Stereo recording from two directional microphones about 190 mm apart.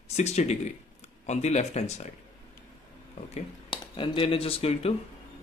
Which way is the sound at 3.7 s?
25° left (ahead or behind).